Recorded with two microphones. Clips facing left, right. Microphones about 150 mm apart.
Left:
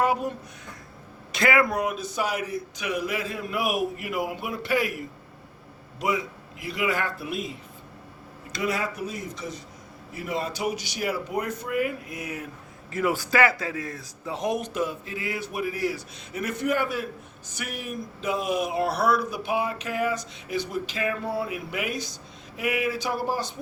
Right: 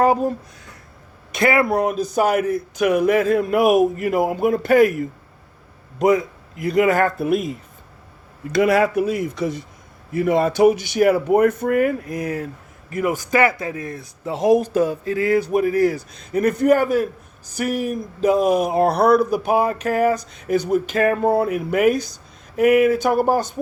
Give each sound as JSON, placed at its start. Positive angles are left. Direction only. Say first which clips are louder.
{"t": 0.0, "sound": "speech", "louder": "right 7 dB", "side_deg": -35}
{"t": 6.0, "sound": "speech", "louder": "right 11 dB", "side_deg": -45}
{"t": 8.5, "sound": "speech", "louder": "right 12 dB", "side_deg": -55}
{"t": 13.1, "sound": "speech", "louder": "right 5 dB", "side_deg": -20}